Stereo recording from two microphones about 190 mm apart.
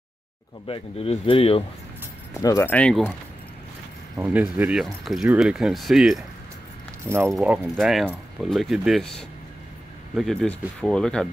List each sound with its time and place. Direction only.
0.7 s speech: 30° left (ahead or behind)
2.4 s speech: 15° left (ahead or behind)
4.2 s speech: 10° right (ahead or behind)
7.1 s speech: 15° right (ahead or behind)
7.3 s speech: 5° right (ahead or behind)